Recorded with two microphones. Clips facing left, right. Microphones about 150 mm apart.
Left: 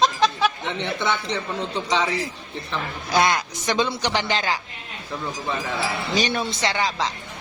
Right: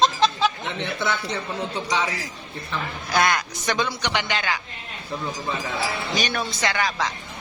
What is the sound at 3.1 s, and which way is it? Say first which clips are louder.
A man's voice: left 1 dB; 25° left (ahead or behind).